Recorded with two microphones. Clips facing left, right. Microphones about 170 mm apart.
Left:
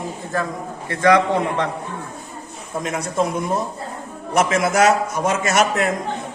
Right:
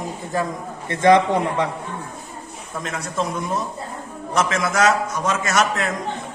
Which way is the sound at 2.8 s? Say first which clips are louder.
Left 4 dB; 20° left (ahead or behind).